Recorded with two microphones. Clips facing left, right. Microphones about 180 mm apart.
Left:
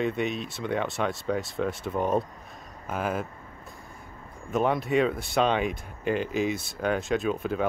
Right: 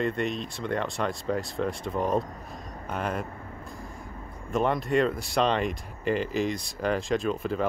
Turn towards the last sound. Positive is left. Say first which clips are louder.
# even
turn(degrees=0)  # may be behind; listen again after turning